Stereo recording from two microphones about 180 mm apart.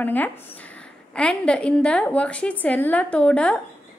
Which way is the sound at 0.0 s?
10° left (ahead or behind).